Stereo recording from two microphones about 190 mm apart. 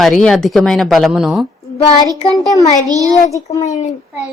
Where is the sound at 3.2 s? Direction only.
15° left (ahead or behind).